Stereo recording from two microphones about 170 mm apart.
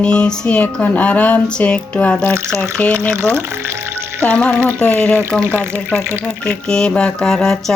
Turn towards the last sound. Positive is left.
turn(degrees=5)  # may be behind; listen again after turning